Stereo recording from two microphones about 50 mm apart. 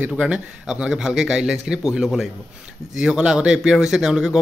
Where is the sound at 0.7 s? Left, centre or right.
Centre.